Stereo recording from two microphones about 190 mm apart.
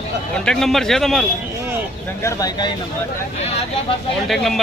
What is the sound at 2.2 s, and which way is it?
Speech, 15° left (ahead or behind).